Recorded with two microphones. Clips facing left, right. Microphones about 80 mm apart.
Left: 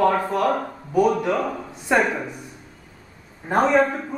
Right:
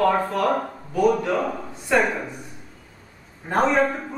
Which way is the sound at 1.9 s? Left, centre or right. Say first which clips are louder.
Left 1 dB; centre.